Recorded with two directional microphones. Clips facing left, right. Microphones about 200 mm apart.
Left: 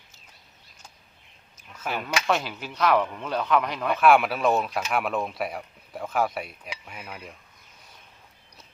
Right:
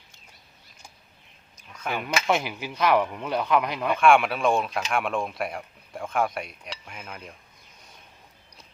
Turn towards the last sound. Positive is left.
turn(degrees=0)  # may be behind; listen again after turning